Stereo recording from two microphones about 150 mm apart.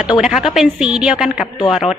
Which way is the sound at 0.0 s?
5° right (ahead or behind).